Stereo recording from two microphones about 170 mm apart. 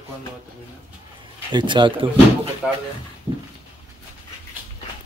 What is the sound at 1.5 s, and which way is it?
Speech, 25° right (ahead or behind).